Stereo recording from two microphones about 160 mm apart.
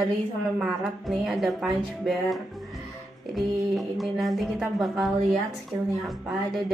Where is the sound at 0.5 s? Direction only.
Centre (ahead or behind).